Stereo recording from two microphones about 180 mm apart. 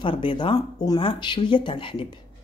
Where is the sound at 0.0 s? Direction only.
30° left (ahead or behind).